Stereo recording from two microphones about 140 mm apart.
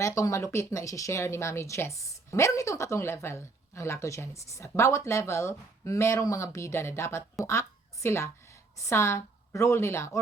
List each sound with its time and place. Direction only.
0.0 s speech: 20° left (ahead or behind)